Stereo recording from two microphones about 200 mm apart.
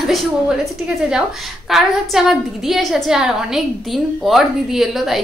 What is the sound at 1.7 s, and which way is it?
A woman's voice, centre (ahead or behind).